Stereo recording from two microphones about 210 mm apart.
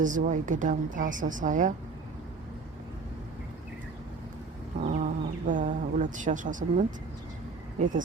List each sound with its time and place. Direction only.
0.0 s a woman's voice: 40° right (ahead or behind)
4.8 s speech: 35° right (ahead or behind)